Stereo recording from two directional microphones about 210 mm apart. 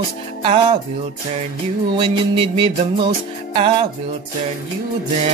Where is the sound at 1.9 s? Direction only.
25° right (ahead or behind).